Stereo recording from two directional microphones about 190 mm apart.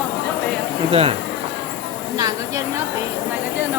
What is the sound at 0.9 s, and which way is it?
Speech, 30° right (ahead or behind).